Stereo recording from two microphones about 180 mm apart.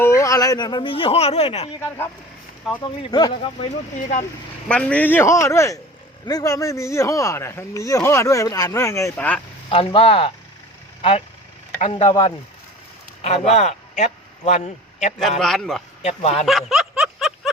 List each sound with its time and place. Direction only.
0.0 s speech: 15° left (ahead or behind)
2.8 s speech: 25° left (ahead or behind)
3.9 s speech: 45° left (ahead or behind)
4.7 s speech: 5° left (ahead or behind)
9.6 s speech: 30° left (ahead or behind)
11.8 s a man's voice: 35° left (ahead or behind)
15.4 s speech: centre (ahead or behind)
16.0 s speech: 40° left (ahead or behind)
16.5 s snicker: centre (ahead or behind)